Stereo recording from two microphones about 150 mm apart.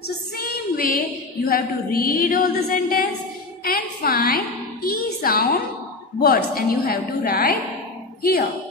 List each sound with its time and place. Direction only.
0.4 s female singing: 80° left
3.6 s a woman's voice: 80° left